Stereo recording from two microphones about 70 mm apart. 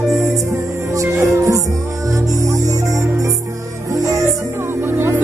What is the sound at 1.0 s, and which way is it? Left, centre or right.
Music, right.